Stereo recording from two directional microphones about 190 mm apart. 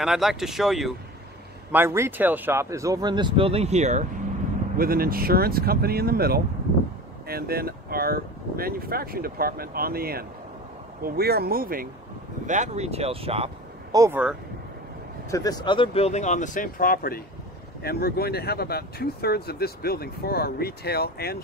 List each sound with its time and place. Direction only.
0.0 s speech: centre (ahead or behind)
1.7 s speech: 15° right (ahead or behind); by 4.1 s 40° right (ahead or behind)
4.7 s speech: 50° right (ahead or behind)
12.4 s speech: 40° right (ahead or behind)
13.9 s speech: 15° right (ahead or behind)
15.2 s speech: 20° left (ahead or behind); by 21.4 s 55° left (ahead or behind)